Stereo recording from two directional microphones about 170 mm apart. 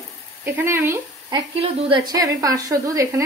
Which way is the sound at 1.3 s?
30° right (ahead or behind).